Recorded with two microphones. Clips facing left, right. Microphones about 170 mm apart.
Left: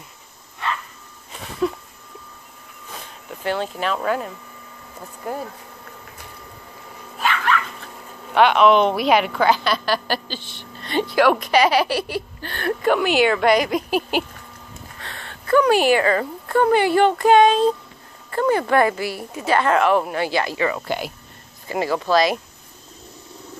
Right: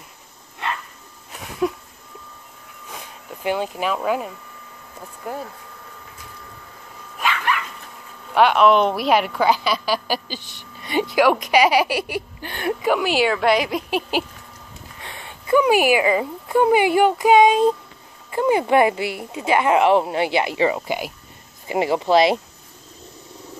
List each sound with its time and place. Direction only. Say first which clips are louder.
1.6 s a sound: even; 15° right (ahead or behind)
2.9 s a sound: even; 10° right (ahead or behind)
5.2 s a woman's voice: left 2 dB; centre (ahead or behind)
8.4 s a woman's voice: left 1 dB; 5° right (ahead or behind)
15.0 s a woman's voice: right 2 dB; 15° right (ahead or behind)
20.8 s speech: even; 10° right (ahead or behind)
21.6 s speech: right 2 dB; 20° right (ahead or behind)